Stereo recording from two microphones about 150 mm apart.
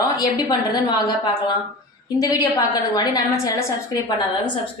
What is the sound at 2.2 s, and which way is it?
A woman's voice, 25° left (ahead or behind).